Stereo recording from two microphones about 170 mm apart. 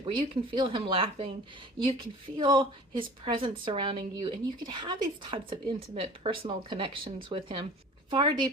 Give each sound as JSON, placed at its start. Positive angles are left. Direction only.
{"t": 0.0, "sound": "a woman's voice", "side_deg": -30}